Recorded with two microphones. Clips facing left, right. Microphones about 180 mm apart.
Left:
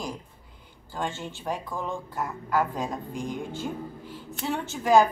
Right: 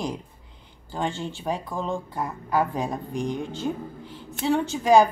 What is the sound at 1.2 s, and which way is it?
A woman's voice, 15° right (ahead or behind).